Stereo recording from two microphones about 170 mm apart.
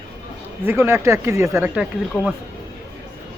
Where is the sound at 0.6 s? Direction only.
15° right (ahead or behind).